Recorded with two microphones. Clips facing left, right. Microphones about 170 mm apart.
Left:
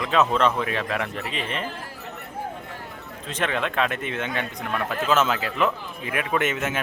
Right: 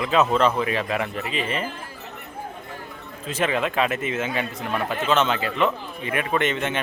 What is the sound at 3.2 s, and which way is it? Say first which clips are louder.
Speech: right 3 dB; 5° right (ahead or behind).